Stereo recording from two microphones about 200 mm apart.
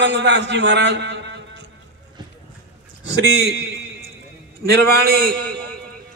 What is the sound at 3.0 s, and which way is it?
Speech, 55° right (ahead or behind).